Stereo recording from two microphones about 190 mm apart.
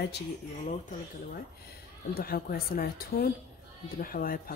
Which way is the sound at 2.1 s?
50° left (ahead or behind).